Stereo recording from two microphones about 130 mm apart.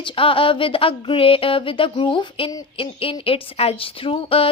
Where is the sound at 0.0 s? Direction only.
45° left (ahead or behind).